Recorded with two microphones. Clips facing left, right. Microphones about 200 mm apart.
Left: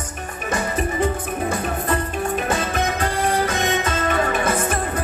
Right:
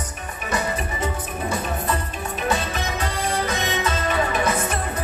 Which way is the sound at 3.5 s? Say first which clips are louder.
Left 2 dB; 50° left (ahead or behind).